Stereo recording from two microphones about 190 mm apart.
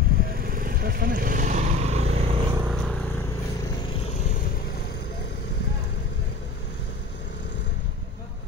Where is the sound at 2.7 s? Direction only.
5° left (ahead or behind); by 5.5 s 60° left (ahead or behind).